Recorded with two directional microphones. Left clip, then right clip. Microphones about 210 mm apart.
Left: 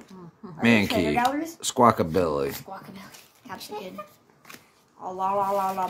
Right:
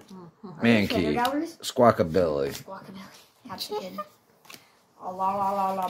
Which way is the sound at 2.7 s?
30° left (ahead or behind).